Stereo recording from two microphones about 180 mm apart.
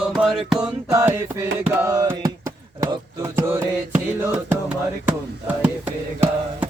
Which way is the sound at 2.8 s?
15° right (ahead or behind).